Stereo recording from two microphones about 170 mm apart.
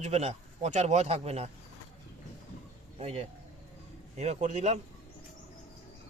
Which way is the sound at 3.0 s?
40° right (ahead or behind).